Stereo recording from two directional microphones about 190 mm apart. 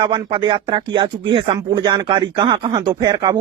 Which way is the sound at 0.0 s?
25° right (ahead or behind).